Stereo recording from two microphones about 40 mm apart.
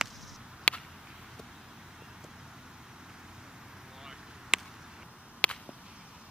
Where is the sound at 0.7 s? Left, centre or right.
Left.